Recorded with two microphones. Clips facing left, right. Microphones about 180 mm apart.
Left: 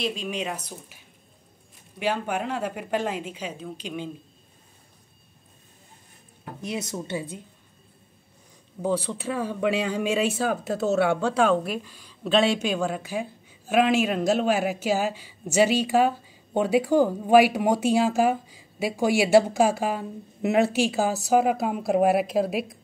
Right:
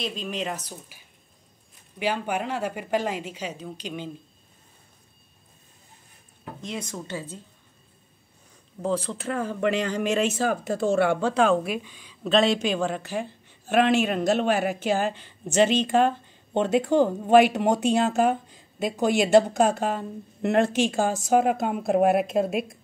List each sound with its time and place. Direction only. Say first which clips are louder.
0.0 s a woman's voice: left 1 dB; centre (ahead or behind)
6.7 s speech: left 3 dB; 20° left (ahead or behind)
8.8 s a woman's voice: left 1 dB; 5° left (ahead or behind)